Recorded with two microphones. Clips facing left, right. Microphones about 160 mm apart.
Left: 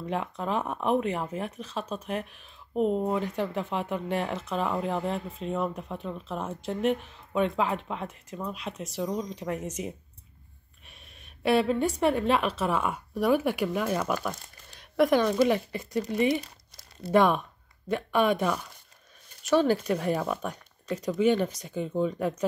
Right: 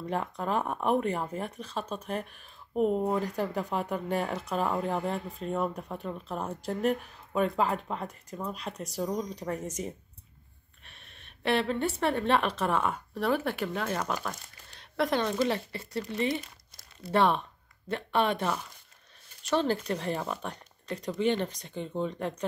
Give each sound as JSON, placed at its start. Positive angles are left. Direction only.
{"t": 0.0, "sound": "speech", "side_deg": 0}
{"t": 10.8, "sound": "speech", "side_deg": 5}
{"t": 19.4, "sound": "speech", "side_deg": 10}